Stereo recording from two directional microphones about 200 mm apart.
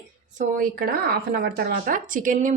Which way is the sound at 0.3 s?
45° right (ahead or behind).